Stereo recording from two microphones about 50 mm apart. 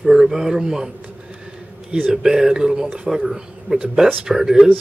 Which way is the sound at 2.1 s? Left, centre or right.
Centre.